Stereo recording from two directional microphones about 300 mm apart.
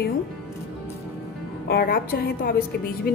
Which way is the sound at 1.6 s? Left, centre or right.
Left.